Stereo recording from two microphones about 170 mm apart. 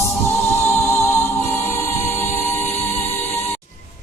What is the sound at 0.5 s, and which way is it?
Music, 15° left (ahead or behind).